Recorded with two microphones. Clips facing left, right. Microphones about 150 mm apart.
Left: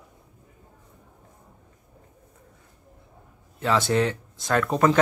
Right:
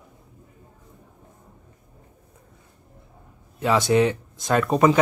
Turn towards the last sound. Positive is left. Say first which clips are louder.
# right 3 dB
turn(degrees=-15)  # may be behind; listen again after turning